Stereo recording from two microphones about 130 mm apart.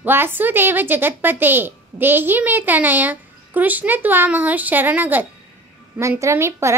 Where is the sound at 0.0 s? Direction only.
15° right (ahead or behind).